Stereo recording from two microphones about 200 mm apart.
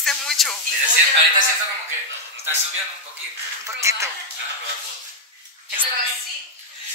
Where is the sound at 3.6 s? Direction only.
15° right (ahead or behind).